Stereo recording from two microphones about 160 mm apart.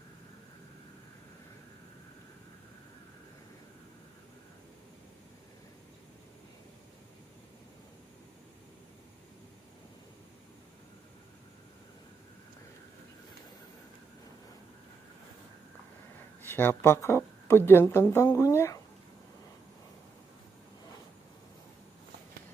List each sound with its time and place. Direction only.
16.4 s speech: 15° left (ahead or behind)